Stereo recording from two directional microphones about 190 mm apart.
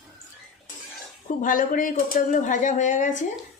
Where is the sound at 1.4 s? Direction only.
45° left (ahead or behind).